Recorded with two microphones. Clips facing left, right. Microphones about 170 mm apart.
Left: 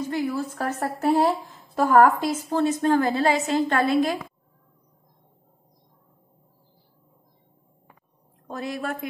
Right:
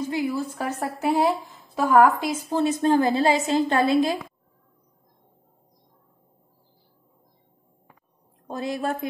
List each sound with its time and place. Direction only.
0.1 s a woman's voice: 10° right (ahead or behind)
2.5 s a woman's voice: 20° right (ahead or behind)
8.5 s a woman's voice: 25° right (ahead or behind)